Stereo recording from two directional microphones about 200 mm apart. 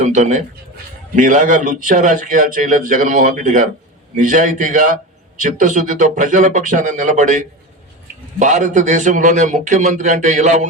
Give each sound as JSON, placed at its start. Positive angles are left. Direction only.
{"t": 0.0, "sound": "a man's voice", "side_deg": -35}